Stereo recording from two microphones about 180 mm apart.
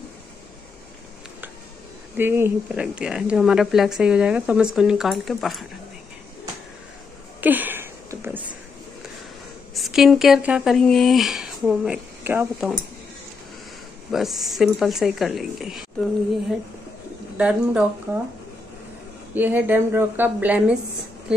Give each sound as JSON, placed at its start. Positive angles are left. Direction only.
{"t": 2.1, "sound": "a woman's voice", "side_deg": -10}
{"t": 7.3, "sound": "a sound", "side_deg": -10}
{"t": 9.8, "sound": "speech", "side_deg": 0}
{"t": 14.1, "sound": "a woman's voice", "side_deg": 0}
{"t": 17.4, "sound": "a woman's voice", "side_deg": -5}
{"t": 19.3, "sound": "a woman's voice", "side_deg": -10}